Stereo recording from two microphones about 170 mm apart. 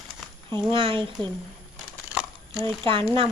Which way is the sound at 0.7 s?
30° right (ahead or behind).